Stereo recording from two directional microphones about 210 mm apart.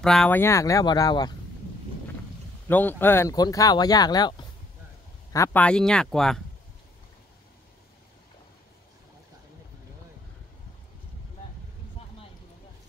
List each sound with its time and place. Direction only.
0.0 s speech: 5° left (ahead or behind)
2.7 s speech: 10° left (ahead or behind)